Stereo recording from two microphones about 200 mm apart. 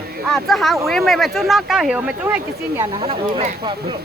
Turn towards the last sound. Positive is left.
turn(degrees=-25)  # may be behind; listen again after turning